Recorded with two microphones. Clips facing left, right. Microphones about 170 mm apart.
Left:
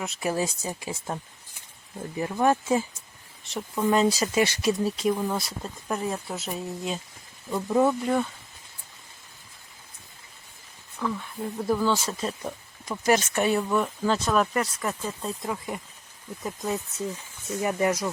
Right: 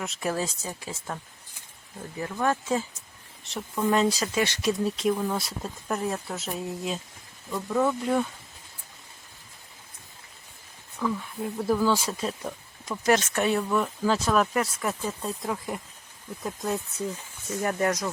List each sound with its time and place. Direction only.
0.0 s speech: 5° left (ahead or behind)
3.5 s speech: centre (ahead or behind)
7.5 s speech: 20° left (ahead or behind)
11.0 s speech: 10° right (ahead or behind)
12.4 s speech: 5° left (ahead or behind)